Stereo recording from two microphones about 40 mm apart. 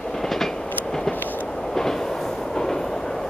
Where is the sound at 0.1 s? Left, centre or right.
Centre.